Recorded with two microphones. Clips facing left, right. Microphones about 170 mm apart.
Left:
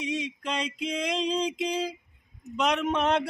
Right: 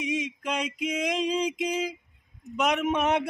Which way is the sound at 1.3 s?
10° right (ahead or behind).